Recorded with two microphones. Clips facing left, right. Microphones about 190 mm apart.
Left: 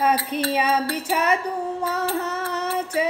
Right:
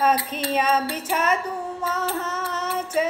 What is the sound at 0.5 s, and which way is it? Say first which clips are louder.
Mantra: right 2 dB; 15° left (ahead or behind).